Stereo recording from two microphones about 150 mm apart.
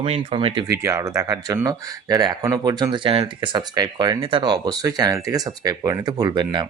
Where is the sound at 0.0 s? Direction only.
40° right (ahead or behind).